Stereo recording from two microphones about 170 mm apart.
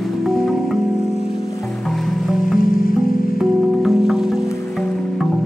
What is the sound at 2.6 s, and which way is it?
Music, 55° left (ahead or behind).